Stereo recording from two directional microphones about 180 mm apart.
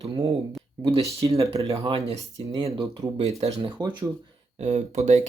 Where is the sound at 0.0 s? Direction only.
35° right (ahead or behind).